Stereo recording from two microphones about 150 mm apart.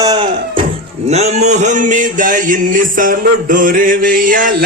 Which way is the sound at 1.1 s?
45° right (ahead or behind).